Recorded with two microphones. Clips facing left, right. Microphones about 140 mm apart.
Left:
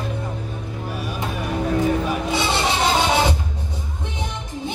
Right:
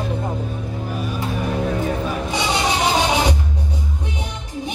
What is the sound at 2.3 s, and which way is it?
Music, 15° right (ahead or behind).